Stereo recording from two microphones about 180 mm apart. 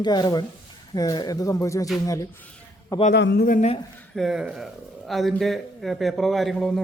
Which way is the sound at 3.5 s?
45° left (ahead or behind).